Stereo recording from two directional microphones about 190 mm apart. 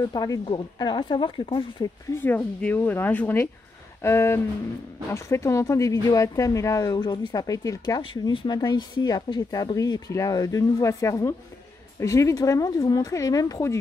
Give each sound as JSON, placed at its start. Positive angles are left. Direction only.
{"t": 0.0, "sound": "speech", "side_deg": 20}
{"t": 2.1, "sound": "speech", "side_deg": 10}